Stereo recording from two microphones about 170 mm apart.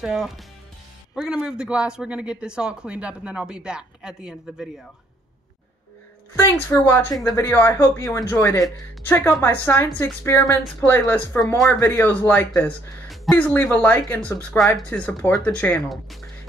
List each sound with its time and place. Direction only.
0.0 s speech: 5° right (ahead or behind)
6.3 s speech: 15° left (ahead or behind)